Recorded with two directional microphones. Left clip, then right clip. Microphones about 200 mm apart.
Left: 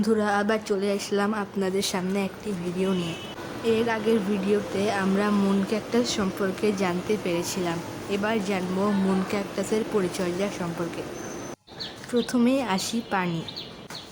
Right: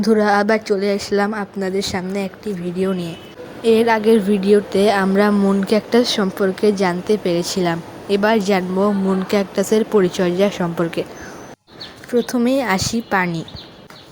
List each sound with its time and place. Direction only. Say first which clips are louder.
0.0 s speech: right 9 dB; 25° right (ahead or behind)
3.6 s a woman's voice: right 10 dB; 30° right (ahead or behind)
12.1 s speech: right 7 dB; 20° right (ahead or behind)